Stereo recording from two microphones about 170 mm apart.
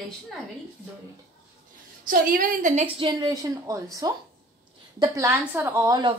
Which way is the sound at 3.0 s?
25° right (ahead or behind).